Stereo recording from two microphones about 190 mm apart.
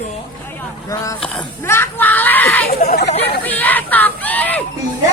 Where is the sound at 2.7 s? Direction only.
55° left (ahead or behind).